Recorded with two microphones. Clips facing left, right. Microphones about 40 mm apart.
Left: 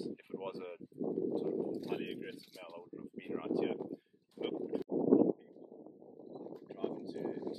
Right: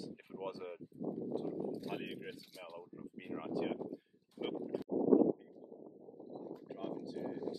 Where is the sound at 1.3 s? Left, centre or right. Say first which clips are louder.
Left 4 dB; left.